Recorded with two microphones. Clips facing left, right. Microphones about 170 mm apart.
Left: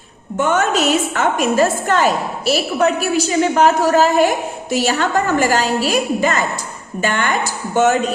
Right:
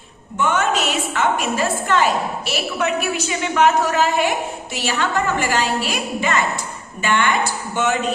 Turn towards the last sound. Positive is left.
turn(degrees=45)  # may be behind; listen again after turning